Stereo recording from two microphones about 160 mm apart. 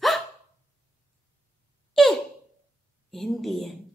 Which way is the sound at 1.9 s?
Centre (ahead or behind).